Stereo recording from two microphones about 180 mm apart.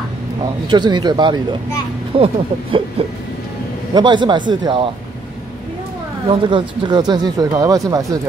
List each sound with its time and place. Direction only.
0.7 s speech: 25° right (ahead or behind)
6.2 s speech: 25° right (ahead or behind)